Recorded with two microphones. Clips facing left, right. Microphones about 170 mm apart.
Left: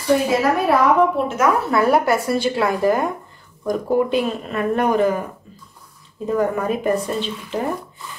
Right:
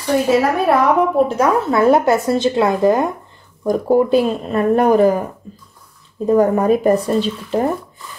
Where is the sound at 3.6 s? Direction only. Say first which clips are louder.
Right 4 dB; 35° right (ahead or behind).